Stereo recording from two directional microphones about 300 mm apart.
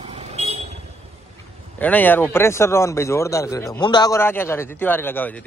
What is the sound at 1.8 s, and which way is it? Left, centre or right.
Speech, centre.